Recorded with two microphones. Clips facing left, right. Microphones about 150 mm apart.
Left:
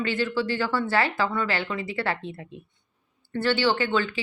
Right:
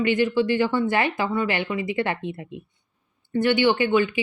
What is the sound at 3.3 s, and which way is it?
Speech, 15° right (ahead or behind).